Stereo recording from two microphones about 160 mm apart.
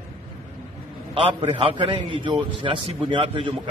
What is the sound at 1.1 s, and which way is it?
A man's voice, 30° right (ahead or behind).